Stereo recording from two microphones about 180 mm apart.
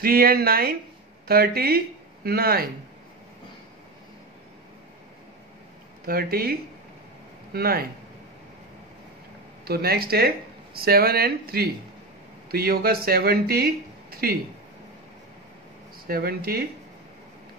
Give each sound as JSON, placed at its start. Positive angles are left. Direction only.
{"t": 0.0, "sound": "speech", "side_deg": -55}
{"t": 6.0, "sound": "speech", "side_deg": -55}
{"t": 9.7, "sound": "speech", "side_deg": -60}
{"t": 14.1, "sound": "a sound", "side_deg": -55}
{"t": 16.1, "sound": "speech", "side_deg": -55}